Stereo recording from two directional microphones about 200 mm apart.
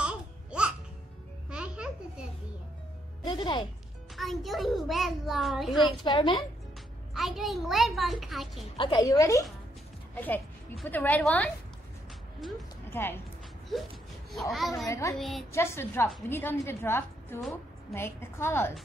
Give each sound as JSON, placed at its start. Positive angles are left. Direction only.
{"t": 0.0, "sound": "music", "side_deg": -5}
{"t": 3.3, "sound": "speech", "side_deg": 25}
{"t": 4.2, "sound": "a child's voice", "side_deg": 0}
{"t": 6.0, "sound": "speech", "side_deg": 25}
{"t": 7.2, "sound": "a child's voice", "side_deg": 0}
{"t": 8.7, "sound": "a woman's voice", "side_deg": 25}
{"t": 12.9, "sound": "a woman's voice", "side_deg": 10}
{"t": 14.5, "sound": "a child's voice", "side_deg": 0}
{"t": 14.9, "sound": "a woman's voice", "side_deg": 15}
{"t": 15.1, "sound": "a child's voice", "side_deg": 0}
{"t": 15.5, "sound": "a woman's voice", "side_deg": 15}